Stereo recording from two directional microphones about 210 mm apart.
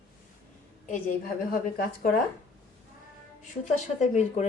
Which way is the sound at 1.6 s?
45° left (ahead or behind).